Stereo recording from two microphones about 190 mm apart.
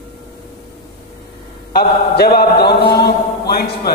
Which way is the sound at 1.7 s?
55° left (ahead or behind).